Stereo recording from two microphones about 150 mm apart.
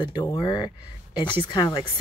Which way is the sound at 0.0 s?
30° left (ahead or behind).